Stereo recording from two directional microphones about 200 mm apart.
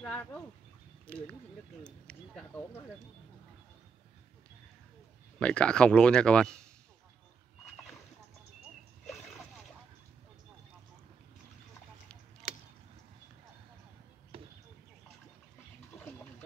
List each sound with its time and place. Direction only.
0.0 s speech: 5° left (ahead or behind)
5.4 s speech: 5° left (ahead or behind)
14.3 s basketball bounce: 25° right (ahead or behind)